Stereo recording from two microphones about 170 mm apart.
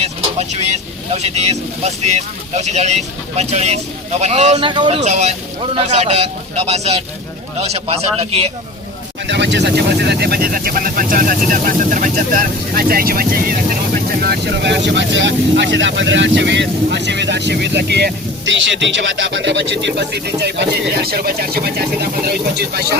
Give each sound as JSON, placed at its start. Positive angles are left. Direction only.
{"t": 0.0, "sound": "vehicle", "side_deg": -40}
{"t": 1.1, "sound": "speech", "side_deg": -40}
{"t": 4.7, "sound": "speech", "side_deg": -25}
{"t": 4.9, "sound": "speech", "side_deg": -40}
{"t": 9.2, "sound": "speech", "side_deg": -90}